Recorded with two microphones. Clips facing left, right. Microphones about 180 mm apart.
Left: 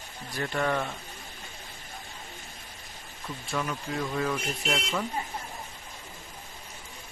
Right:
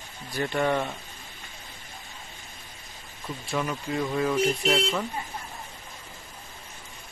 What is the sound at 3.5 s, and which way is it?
Speech, 5° right (ahead or behind).